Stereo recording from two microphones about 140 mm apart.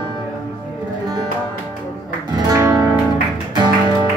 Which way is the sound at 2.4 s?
25° right (ahead or behind).